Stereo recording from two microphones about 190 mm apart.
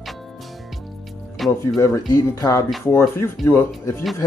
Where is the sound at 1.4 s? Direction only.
Centre (ahead or behind).